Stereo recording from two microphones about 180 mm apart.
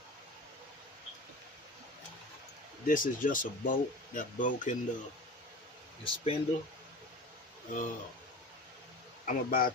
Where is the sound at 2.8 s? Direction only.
50° left (ahead or behind).